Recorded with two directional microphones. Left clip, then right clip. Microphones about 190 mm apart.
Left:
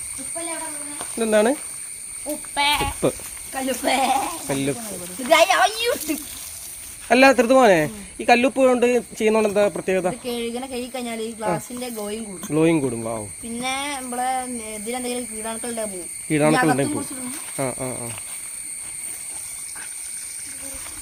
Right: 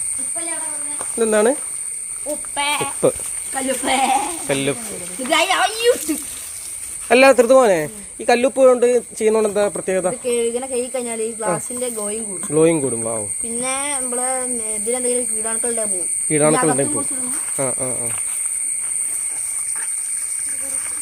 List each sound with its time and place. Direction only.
0.9 s cricket: centre (ahead or behind)
2.2 s speech: 10° right (ahead or behind)
3.5 s speech: 20° left (ahead or behind)
4.4 s speech: centre (ahead or behind)
5.3 s speech: 10° left (ahead or behind)
7.1 s speech: centre (ahead or behind)